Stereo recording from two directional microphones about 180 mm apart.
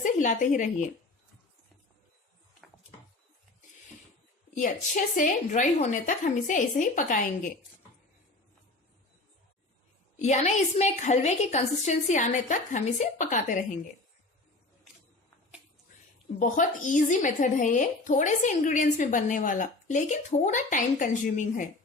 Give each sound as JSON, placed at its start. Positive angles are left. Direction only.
{"t": 0.0, "sound": "speech", "side_deg": 45}
{"t": 4.5, "sound": "speech", "side_deg": 45}
{"t": 10.2, "sound": "a woman's voice", "side_deg": 40}
{"t": 16.4, "sound": "speech", "side_deg": 45}